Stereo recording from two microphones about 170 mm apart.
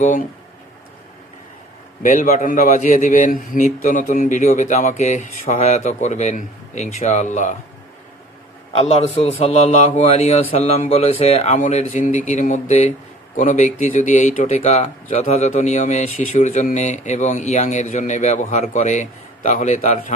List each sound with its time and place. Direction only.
2.0 s speech: 50° left (ahead or behind)
8.7 s a man's voice: 35° left (ahead or behind)